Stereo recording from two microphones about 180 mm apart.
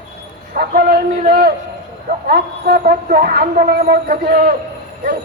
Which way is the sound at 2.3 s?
60° right (ahead or behind).